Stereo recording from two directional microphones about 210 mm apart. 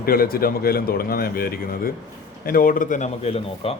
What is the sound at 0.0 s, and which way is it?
Speech, 45° left (ahead or behind).